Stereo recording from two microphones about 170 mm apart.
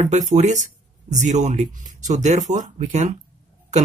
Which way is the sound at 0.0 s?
45° right (ahead or behind).